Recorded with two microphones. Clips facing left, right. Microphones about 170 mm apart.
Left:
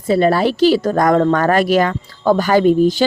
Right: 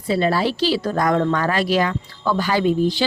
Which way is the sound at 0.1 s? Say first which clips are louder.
Left 5 dB; 50° left (ahead or behind).